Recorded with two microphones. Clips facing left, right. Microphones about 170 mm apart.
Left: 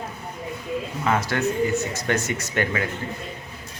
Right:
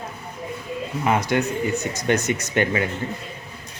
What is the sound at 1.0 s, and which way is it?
Speech, 15° right (ahead or behind).